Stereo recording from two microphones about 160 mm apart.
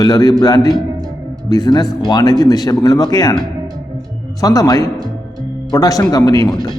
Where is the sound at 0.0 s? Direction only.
25° left (ahead or behind).